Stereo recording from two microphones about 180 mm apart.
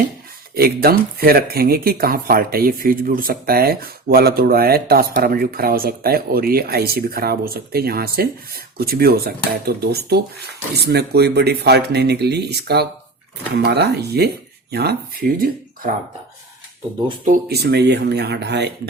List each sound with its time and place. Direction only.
0.5 s speech: 55° right (ahead or behind)
17.5 s speech: 65° right (ahead or behind)